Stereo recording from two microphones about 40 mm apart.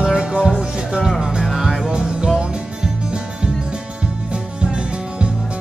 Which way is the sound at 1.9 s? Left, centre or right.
Centre.